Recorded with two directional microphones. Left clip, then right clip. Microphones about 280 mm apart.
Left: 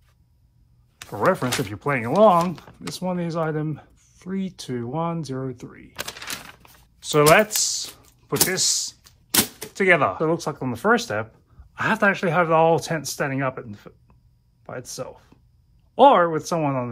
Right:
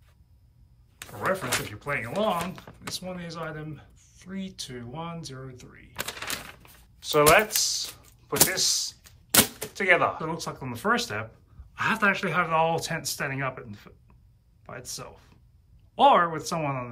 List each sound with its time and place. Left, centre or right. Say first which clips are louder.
1.7 s speech: left 7 dB; centre
5.9 s a sound: left 1 dB; centre
6.5 s a sound: left 2 dB; centre
7.0 s speech: left 4 dB; left
9.0 s typewriter: right 3 dB; centre
9.8 s speech: left 4 dB; left
10.2 s speech: left 9 dB; centre